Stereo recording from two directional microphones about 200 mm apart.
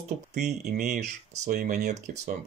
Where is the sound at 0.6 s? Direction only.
55° right (ahead or behind).